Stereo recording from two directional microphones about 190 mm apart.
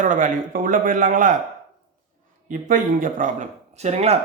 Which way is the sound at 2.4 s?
45° right (ahead or behind).